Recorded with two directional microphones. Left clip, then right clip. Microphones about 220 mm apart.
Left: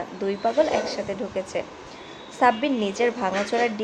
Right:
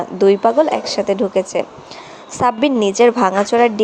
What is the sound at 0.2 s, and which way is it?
A woman's voice, 30° right (ahead or behind).